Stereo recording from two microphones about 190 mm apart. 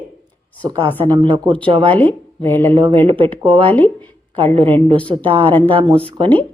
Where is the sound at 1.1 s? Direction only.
25° right (ahead or behind).